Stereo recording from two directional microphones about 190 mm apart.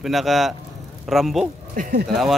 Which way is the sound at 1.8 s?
45° right (ahead or behind).